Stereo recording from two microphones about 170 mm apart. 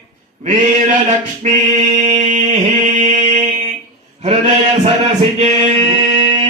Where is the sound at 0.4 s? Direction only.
45° right (ahead or behind).